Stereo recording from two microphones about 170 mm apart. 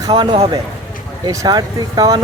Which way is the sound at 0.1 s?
35° right (ahead or behind).